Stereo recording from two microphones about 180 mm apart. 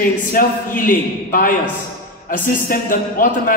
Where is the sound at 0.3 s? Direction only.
50° left (ahead or behind).